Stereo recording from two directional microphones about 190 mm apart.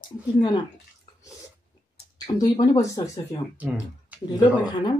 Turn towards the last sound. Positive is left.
turn(degrees=25)  # may be behind; listen again after turning